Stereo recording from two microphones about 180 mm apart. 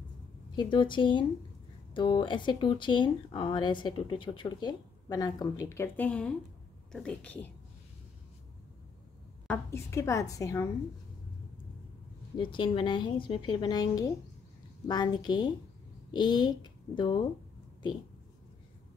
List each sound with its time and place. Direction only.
0.6 s a woman's voice: 25° left (ahead or behind); by 7.5 s 5° left (ahead or behind)
9.5 s a woman's voice: 15° left (ahead or behind)
12.4 s speech: 25° left (ahead or behind)